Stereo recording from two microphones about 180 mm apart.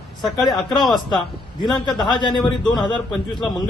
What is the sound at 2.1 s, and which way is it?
Speech, 25° left (ahead or behind).